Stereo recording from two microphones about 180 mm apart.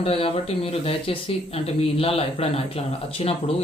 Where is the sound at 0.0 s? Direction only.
35° left (ahead or behind).